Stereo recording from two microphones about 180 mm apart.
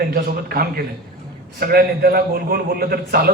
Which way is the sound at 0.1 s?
60° right (ahead or behind).